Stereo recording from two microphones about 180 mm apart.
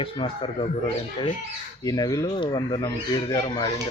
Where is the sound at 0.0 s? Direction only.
30° left (ahead or behind).